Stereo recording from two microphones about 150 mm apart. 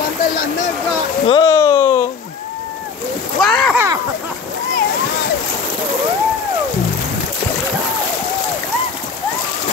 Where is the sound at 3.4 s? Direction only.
5° left (ahead or behind).